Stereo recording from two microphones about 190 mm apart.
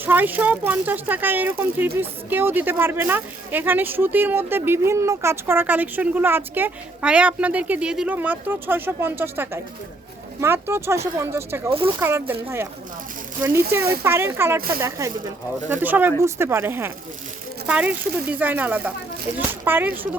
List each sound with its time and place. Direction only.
0.0 s speech: 10° right (ahead or behind)